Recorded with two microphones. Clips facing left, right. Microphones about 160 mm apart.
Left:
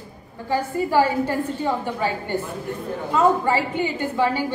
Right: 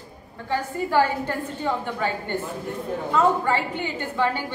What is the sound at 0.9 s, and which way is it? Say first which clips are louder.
A woman's voice: left 2 dB; 10° left (ahead or behind).